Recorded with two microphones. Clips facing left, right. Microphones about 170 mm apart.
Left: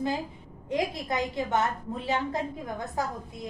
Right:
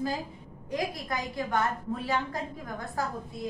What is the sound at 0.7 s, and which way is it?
A woman's voice, 25° left (ahead or behind).